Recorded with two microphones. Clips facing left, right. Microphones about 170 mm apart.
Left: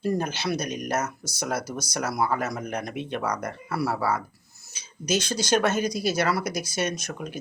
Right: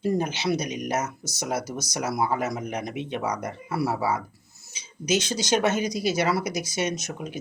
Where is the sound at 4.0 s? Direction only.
5° right (ahead or behind).